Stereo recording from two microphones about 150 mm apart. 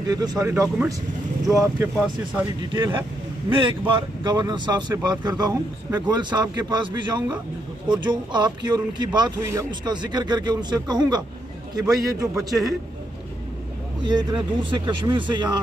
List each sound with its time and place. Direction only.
0.1 s speech: 25° right (ahead or behind)
14.0 s speech: 30° right (ahead or behind)